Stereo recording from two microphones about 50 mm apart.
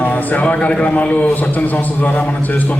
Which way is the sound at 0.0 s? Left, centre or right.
Left.